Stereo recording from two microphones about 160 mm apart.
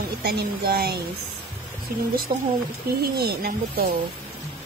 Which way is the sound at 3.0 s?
75° right (ahead or behind).